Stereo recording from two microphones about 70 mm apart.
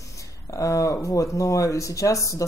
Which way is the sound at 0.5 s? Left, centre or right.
Left.